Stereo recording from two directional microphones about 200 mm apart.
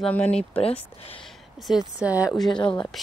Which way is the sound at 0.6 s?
30° left (ahead or behind).